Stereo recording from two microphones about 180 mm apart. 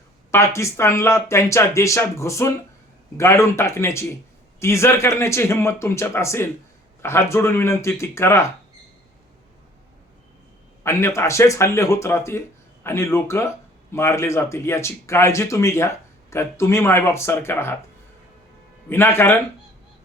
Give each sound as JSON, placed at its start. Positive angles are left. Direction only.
{"t": 0.3, "sound": "speech", "side_deg": 15}
{"t": 10.8, "sound": "speech", "side_deg": 15}
{"t": 18.9, "sound": "speech", "side_deg": 15}